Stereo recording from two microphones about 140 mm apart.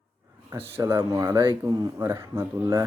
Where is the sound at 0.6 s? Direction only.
15° right (ahead or behind).